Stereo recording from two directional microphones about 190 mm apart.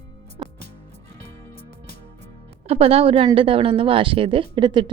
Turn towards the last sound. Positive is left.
turn(degrees=-25)  # may be behind; listen again after turning